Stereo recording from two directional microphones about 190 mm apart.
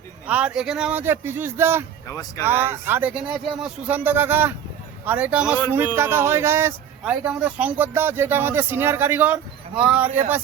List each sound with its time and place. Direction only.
0.3 s a man's voice: 5° right (ahead or behind)
2.0 s speech: 15° left (ahead or behind)
2.5 s a man's voice: 10° right (ahead or behind)